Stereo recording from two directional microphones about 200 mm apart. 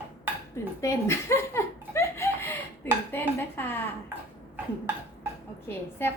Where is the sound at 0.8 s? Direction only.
15° left (ahead or behind).